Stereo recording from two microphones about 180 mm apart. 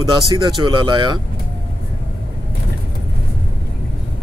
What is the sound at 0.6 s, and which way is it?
Speech, 25° right (ahead or behind).